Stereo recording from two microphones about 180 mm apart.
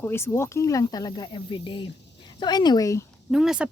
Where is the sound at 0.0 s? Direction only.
15° left (ahead or behind).